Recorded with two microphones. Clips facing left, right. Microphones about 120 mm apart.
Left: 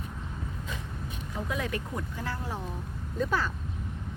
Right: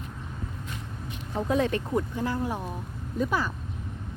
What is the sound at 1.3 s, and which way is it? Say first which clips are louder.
Speech: right 8 dB; 30° right (ahead or behind).